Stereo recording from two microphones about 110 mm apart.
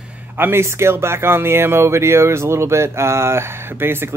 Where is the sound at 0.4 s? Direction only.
20° right (ahead or behind).